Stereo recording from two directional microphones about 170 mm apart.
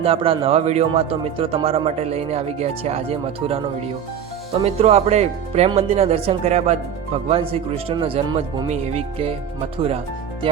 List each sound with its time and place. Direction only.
0.0 s a man's voice: 35° right (ahead or behind)
4.6 s a man's voice: 35° right (ahead or behind)